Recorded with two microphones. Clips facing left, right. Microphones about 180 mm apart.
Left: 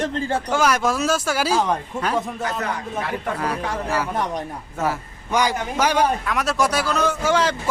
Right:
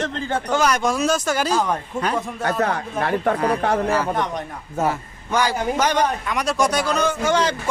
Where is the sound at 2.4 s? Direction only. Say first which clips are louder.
Right 4 dB; 65° right (ahead or behind).